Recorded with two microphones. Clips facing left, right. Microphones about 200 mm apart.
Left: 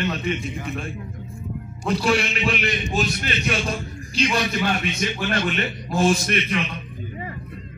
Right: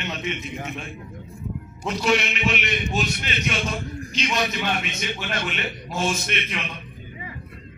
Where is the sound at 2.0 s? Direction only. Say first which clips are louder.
Even; 35° left (ahead or behind).